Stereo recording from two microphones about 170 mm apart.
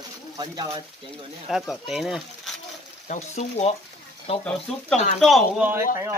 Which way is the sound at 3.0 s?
45° left (ahead or behind).